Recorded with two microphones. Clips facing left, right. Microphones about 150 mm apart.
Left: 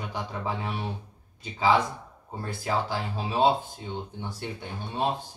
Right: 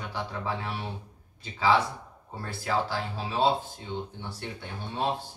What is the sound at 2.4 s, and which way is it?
Speech, 15° left (ahead or behind).